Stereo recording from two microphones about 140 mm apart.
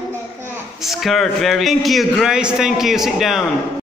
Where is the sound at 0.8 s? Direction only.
Centre (ahead or behind).